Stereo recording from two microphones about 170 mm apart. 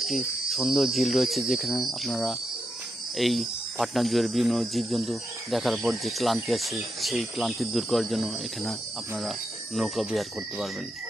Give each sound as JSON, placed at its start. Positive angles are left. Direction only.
{"t": 0.0, "sound": "speech", "side_deg": 0}